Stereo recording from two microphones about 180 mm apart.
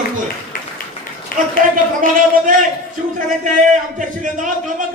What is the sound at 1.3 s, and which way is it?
Speech, 50° left (ahead or behind).